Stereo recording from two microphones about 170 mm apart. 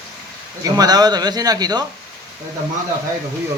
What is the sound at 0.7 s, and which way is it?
A man's voice, 25° right (ahead or behind).